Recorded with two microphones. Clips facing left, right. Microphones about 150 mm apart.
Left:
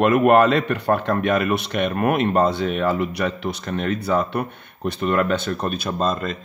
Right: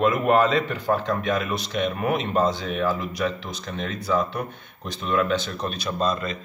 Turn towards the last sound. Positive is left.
turn(degrees=50)  # may be behind; listen again after turning